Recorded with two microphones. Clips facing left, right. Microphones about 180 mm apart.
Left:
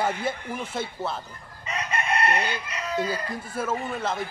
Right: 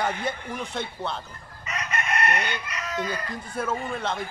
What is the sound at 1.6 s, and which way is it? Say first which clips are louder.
Chicken: left 2 dB; 30° left (ahead or behind).